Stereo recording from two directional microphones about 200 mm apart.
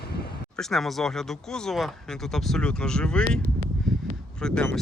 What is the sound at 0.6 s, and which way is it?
Speech, centre (ahead or behind).